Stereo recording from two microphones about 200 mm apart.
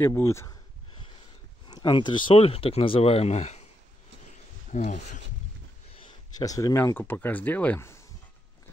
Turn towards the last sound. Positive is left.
turn(degrees=10)  # may be behind; listen again after turning